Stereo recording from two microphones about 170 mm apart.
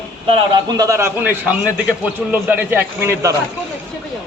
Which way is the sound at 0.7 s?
20° right (ahead or behind).